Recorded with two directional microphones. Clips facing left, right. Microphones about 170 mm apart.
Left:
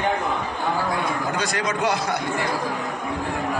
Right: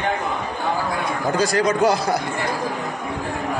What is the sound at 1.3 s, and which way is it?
Speech, 35° right (ahead or behind).